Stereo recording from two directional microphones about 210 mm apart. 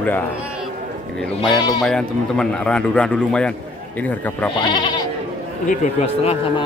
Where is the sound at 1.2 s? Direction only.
Centre (ahead or behind).